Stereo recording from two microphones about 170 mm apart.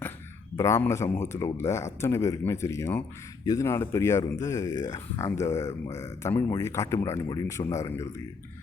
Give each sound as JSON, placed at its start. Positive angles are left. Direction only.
{"t": 0.5, "sound": "speech", "side_deg": 15}